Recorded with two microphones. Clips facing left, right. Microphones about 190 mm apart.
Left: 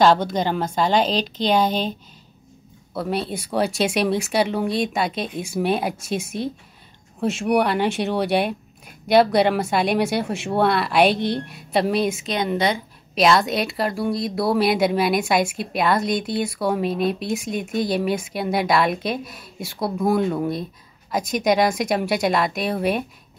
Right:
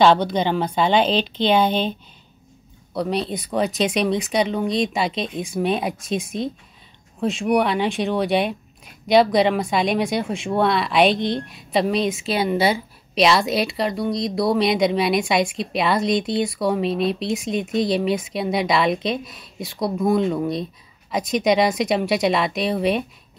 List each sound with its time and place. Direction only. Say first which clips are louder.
0.3 s a woman's voice: right 2 dB; centre (ahead or behind)
0.9 s speech: right 2 dB; 40° left (ahead or behind)
2.9 s a woman's voice: right 2 dB; 5° left (ahead or behind)